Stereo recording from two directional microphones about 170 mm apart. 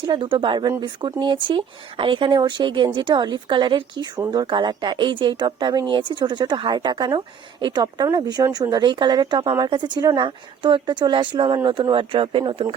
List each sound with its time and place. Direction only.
0.1 s speech: 30° right (ahead or behind)